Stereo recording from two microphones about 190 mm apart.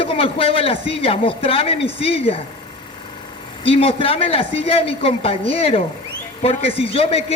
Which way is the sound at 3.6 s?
30° left (ahead or behind).